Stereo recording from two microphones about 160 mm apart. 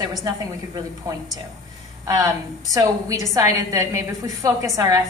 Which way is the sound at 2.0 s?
20° right (ahead or behind).